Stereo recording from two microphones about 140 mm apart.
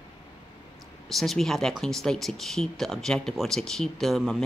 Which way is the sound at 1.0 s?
Centre (ahead or behind).